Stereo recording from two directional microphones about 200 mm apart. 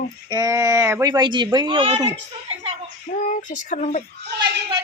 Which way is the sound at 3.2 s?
40° left (ahead or behind).